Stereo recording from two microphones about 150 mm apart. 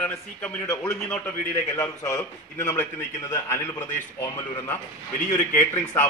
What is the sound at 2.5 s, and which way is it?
A man's voice, 15° left (ahead or behind).